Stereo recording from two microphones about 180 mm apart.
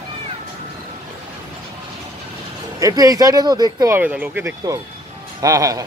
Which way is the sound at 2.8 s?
20° right (ahead or behind).